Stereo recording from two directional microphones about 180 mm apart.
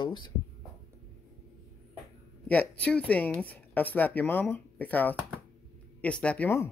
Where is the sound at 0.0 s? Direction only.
25° left (ahead or behind).